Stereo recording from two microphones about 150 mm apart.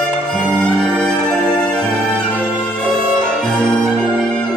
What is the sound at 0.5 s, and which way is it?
Music, 5° left (ahead or behind).